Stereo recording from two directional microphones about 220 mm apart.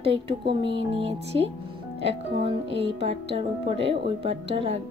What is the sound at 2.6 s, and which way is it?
Speech, 25° right (ahead or behind).